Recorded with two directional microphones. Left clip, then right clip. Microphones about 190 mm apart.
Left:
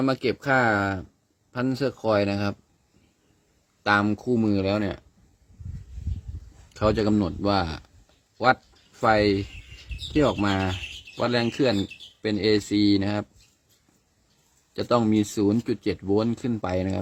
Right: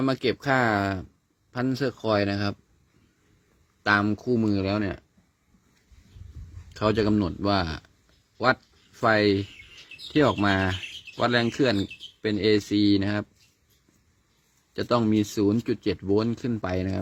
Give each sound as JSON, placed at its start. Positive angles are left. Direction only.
{"t": 0.0, "sound": "speech", "side_deg": -5}
{"t": 3.8, "sound": "speech", "side_deg": 0}
{"t": 6.7, "sound": "speech", "side_deg": 0}
{"t": 9.0, "sound": "speech", "side_deg": -5}
{"t": 10.2, "sound": "speech", "side_deg": -15}
{"t": 14.7, "sound": "speech", "side_deg": 0}